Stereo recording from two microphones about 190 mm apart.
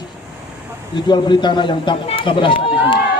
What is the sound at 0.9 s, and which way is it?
Speech, 25° left (ahead or behind).